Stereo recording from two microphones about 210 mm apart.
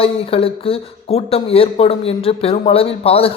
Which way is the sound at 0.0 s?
25° left (ahead or behind).